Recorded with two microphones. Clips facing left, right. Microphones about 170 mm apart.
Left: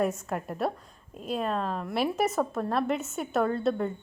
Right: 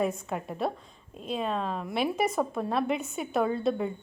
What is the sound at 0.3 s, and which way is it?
A woman's voice, 5° left (ahead or behind).